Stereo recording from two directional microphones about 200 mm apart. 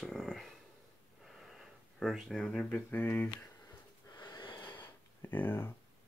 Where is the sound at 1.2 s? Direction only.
Centre (ahead or behind).